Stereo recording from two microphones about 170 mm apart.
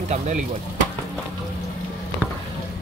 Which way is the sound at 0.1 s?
45° right (ahead or behind).